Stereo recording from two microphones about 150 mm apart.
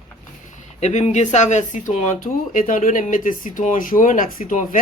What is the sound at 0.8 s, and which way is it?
Speech, 50° left (ahead or behind).